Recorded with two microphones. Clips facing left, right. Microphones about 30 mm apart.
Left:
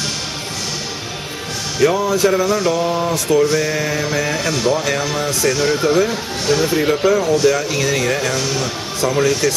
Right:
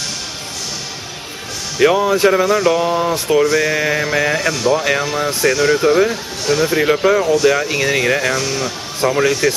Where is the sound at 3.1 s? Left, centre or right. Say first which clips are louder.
Even; right.